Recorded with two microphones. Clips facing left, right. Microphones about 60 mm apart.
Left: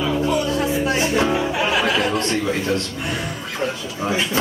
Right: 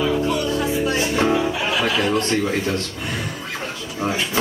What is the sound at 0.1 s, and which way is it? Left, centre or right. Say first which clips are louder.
Music: left 1 dB; left.